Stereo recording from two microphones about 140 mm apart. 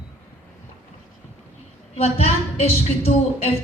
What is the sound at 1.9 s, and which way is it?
Speech, 45° left (ahead or behind).